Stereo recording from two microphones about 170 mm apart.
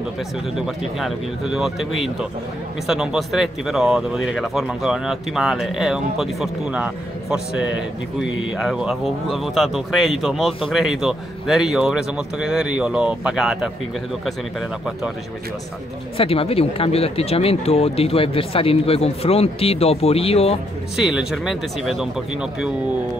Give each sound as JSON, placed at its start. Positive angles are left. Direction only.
{"t": 0.9, "sound": "speech", "side_deg": 0}
{"t": 16.2, "sound": "speech", "side_deg": 35}
{"t": 20.9, "sound": "speech", "side_deg": -5}